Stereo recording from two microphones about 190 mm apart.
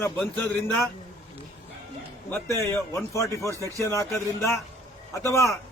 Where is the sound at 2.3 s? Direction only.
15° left (ahead or behind).